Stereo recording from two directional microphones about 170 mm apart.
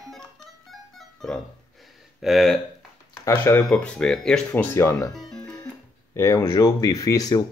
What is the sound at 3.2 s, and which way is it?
Speech, 15° left (ahead or behind).